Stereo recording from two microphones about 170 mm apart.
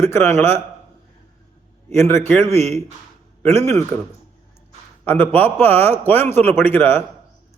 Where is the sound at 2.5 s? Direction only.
40° right (ahead or behind).